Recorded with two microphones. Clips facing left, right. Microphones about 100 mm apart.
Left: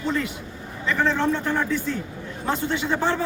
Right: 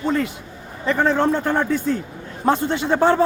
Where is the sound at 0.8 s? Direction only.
40° right (ahead or behind).